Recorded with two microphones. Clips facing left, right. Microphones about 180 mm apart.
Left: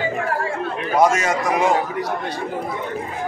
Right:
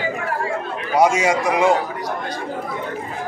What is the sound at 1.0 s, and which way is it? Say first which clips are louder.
Speech: right 1 dB; 10° right (ahead or behind).